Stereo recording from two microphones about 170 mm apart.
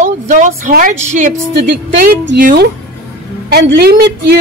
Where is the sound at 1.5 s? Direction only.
65° right (ahead or behind).